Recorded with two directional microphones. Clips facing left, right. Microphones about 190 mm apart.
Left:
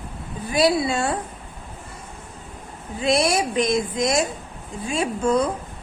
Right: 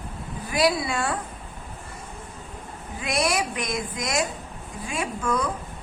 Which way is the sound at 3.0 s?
25° left (ahead or behind).